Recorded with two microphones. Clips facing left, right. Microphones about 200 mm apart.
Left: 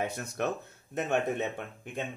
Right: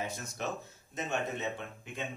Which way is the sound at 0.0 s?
60° left (ahead or behind).